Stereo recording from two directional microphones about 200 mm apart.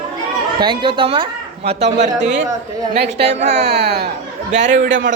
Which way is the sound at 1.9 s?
35° right (ahead or behind).